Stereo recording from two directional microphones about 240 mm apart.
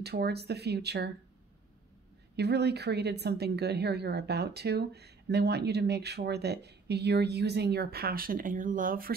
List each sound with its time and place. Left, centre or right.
0.0 s a woman's voice: right
2.3 s a woman's voice: right